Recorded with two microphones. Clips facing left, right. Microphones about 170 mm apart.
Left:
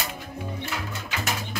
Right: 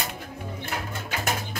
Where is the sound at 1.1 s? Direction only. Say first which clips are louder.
Right 2 dB; 45° right (ahead or behind).